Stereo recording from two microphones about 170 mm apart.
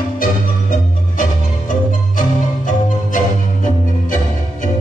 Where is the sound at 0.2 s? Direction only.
50° left (ahead or behind).